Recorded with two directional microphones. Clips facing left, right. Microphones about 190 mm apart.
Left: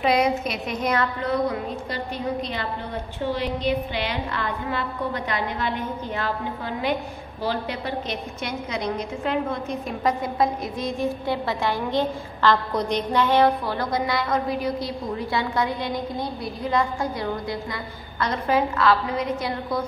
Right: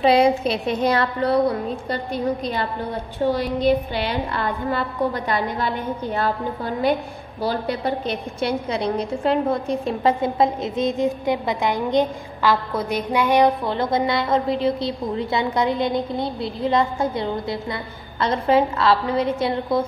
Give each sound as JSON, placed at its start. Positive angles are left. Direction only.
{"t": 0.0, "sound": "a sound", "side_deg": -30}
{"t": 0.4, "sound": "a woman's voice", "side_deg": -30}
{"t": 3.6, "sound": "a woman's voice", "side_deg": -35}